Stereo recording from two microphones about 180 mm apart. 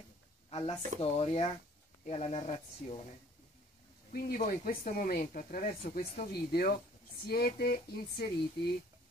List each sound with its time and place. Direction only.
0.5 s a sound: 35° left (ahead or behind)
1.0 s speech: 35° left (ahead or behind)
4.1 s speech: 55° left (ahead or behind)